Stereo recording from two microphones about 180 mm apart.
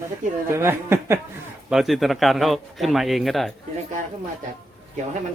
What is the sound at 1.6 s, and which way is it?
A man's voice, centre (ahead or behind).